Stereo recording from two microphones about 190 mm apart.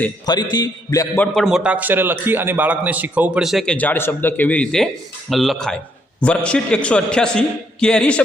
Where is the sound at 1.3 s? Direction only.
Centre (ahead or behind).